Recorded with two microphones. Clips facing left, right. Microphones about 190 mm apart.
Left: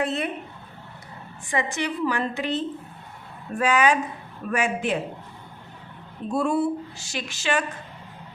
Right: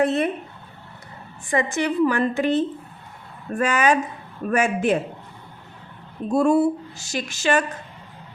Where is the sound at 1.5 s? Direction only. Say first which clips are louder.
Right 4 dB; 45° right (ahead or behind).